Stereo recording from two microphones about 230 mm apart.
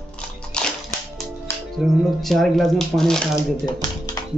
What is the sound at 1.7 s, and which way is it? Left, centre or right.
Speech, centre.